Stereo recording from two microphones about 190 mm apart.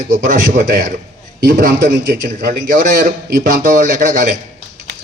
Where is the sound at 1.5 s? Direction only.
60° right (ahead or behind).